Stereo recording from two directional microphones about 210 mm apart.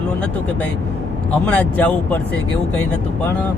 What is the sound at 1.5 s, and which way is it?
Speech, 5° left (ahead or behind).